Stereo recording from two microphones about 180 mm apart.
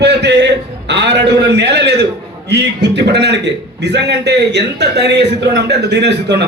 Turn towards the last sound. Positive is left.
turn(degrees=-70)  # may be behind; listen again after turning